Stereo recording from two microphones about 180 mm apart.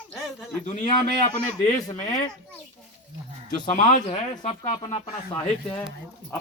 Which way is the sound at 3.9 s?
40° left (ahead or behind).